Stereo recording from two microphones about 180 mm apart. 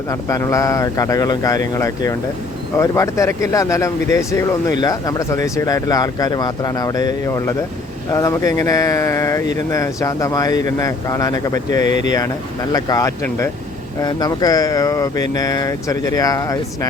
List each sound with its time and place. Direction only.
0.1 s speech: 15° left (ahead or behind)
11.8 s speech: 40° right (ahead or behind)
12.7 s speech: 20° left (ahead or behind)